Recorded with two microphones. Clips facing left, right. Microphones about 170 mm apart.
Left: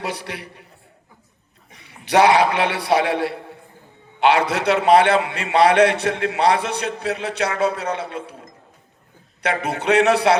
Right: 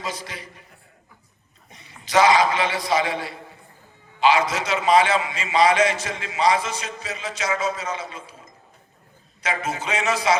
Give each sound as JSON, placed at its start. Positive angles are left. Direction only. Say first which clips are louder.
{"t": 0.0, "sound": "a man's voice", "louder": "left 4 dB", "side_deg": 65}
{"t": 1.7, "sound": "a man's voice", "louder": "left 3 dB", "side_deg": 65}